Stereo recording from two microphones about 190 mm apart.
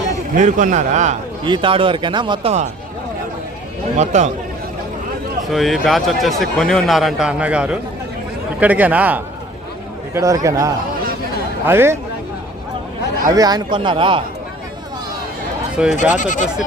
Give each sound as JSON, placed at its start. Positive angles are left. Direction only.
{"t": 0.3, "sound": "a man's voice", "side_deg": -40}
{"t": 1.5, "sound": "speech", "side_deg": -25}
{"t": 3.9, "sound": "a man's voice", "side_deg": -40}
{"t": 5.5, "sound": "a man's voice", "side_deg": 0}
{"t": 13.2, "sound": "speech", "side_deg": -20}
{"t": 15.8, "sound": "a man's voice", "side_deg": -5}
{"t": 16.1, "sound": "speech", "side_deg": 40}